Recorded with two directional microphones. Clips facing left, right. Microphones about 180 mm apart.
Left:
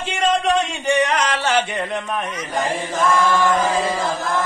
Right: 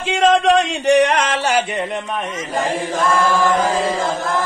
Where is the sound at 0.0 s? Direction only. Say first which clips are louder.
Right 5 dB; 90° right; by 1.2 s 70° right (ahead or behind).